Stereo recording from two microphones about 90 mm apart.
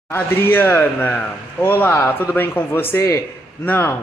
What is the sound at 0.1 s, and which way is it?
Speech, 25° left (ahead or behind).